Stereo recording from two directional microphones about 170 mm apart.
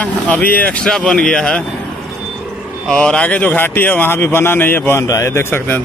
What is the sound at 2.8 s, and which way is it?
Speech, 5° left (ahead or behind).